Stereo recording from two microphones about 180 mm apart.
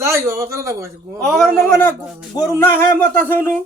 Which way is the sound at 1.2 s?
Centre (ahead or behind).